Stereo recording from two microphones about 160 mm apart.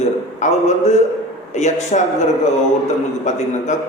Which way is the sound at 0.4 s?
50° left (ahead or behind).